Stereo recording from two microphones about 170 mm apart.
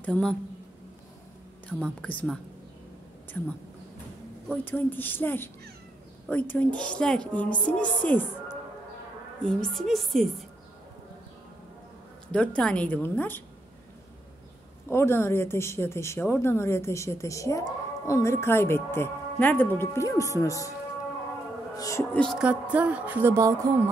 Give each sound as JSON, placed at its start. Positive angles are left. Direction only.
{"t": 0.0, "sound": "a woman's voice", "side_deg": 5}
{"t": 1.7, "sound": "speech", "side_deg": 10}
{"t": 4.5, "sound": "speech", "side_deg": 10}
{"t": 9.4, "sound": "a woman's voice", "side_deg": 5}
{"t": 12.3, "sound": "speech", "side_deg": 5}
{"t": 14.9, "sound": "speech", "side_deg": 15}
{"t": 21.7, "sound": "a sound", "side_deg": 20}
{"t": 22.1, "sound": "music", "side_deg": 5}
{"t": 22.4, "sound": "a sound", "side_deg": -10}